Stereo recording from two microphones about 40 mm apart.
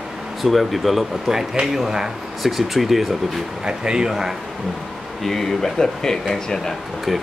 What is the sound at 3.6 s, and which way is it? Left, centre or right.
Speech, right.